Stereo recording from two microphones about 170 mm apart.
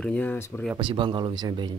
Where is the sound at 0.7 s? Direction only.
30° right (ahead or behind).